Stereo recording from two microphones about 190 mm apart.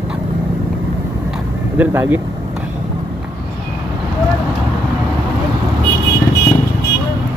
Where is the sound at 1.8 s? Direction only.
10° right (ahead or behind).